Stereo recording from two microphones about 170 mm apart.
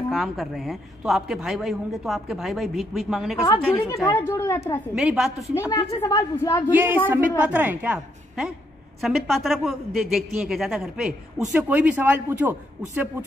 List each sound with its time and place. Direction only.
0.1 s a woman's voice: centre (ahead or behind)
3.8 s a woman's voice: 25° left (ahead or behind)
4.1 s a woman's voice: 10° left (ahead or behind)
4.9 s a woman's voice: 5° right (ahead or behind)
5.7 s a woman's voice: 20° left (ahead or behind)
6.7 s a man's voice: 10° right (ahead or behind)